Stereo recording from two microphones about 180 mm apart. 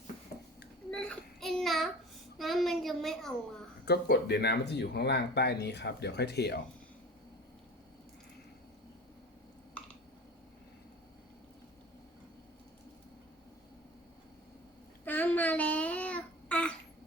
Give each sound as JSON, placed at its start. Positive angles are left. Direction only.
{"t": 0.9, "sound": "child singing", "side_deg": 5}
{"t": 2.4, "sound": "a sound", "side_deg": 0}
{"t": 3.8, "sound": "speech", "side_deg": 65}
{"t": 15.0, "sound": "babbling", "side_deg": 10}